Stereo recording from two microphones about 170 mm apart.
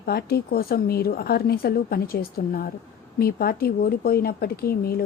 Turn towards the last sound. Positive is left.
turn(degrees=65)  # may be behind; listen again after turning